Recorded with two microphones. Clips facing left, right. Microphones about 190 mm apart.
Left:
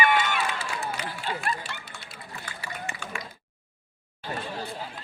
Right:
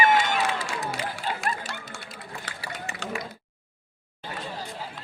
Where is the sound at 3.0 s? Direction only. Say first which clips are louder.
Right 5 dB; 90° right.